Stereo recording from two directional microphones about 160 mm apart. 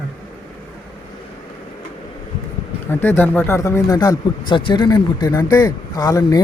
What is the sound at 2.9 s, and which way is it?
Speech, 10° left (ahead or behind).